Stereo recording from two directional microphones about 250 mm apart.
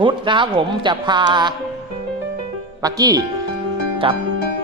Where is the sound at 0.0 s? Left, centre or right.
Centre.